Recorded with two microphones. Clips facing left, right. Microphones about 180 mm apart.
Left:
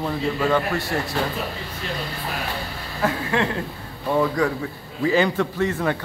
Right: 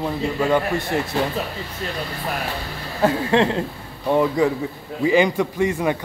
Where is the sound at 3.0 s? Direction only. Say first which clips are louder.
Right 5 dB; 30° right (ahead or behind).